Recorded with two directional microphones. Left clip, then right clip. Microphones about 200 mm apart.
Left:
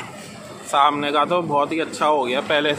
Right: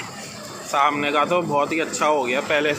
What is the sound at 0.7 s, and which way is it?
Speech, 20° left (ahead or behind).